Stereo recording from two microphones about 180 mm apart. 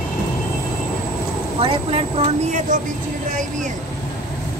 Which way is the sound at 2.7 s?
45° right (ahead or behind).